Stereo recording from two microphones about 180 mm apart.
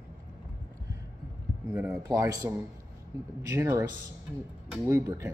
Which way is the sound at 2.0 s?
20° right (ahead or behind).